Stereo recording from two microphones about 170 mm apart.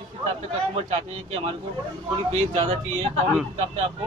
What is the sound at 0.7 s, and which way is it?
Speech, 35° right (ahead or behind).